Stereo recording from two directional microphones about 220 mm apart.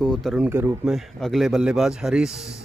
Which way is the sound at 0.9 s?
Centre (ahead or behind).